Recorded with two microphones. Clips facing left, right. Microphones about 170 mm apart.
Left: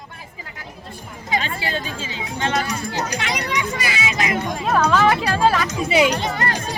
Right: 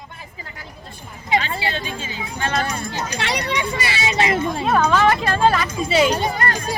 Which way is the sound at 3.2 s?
35° right (ahead or behind).